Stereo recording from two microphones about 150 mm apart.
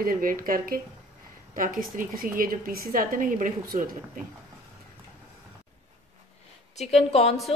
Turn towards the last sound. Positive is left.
turn(degrees=40)  # may be behind; listen again after turning